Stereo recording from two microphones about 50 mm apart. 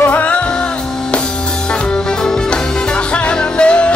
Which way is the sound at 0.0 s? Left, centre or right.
Left.